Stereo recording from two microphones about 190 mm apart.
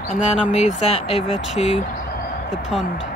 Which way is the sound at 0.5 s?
35° left (ahead or behind).